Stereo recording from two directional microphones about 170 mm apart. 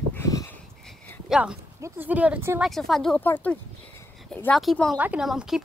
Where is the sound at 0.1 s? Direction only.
20° left (ahead or behind).